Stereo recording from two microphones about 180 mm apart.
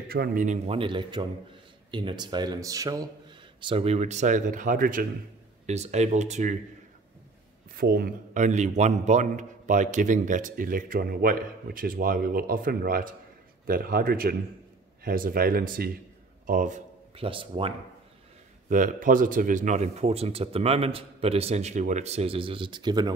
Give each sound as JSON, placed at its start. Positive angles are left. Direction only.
{"t": 0.1, "sound": "a man's voice", "side_deg": -55}
{"t": 0.7, "sound": "speech", "side_deg": -30}
{"t": 3.6, "sound": "a man's voice", "side_deg": -30}
{"t": 5.7, "sound": "speech", "side_deg": -40}
{"t": 7.7, "sound": "a man's voice", "side_deg": -55}
{"t": 17.2, "sound": "speech", "side_deg": -30}
{"t": 18.7, "sound": "speech", "side_deg": -45}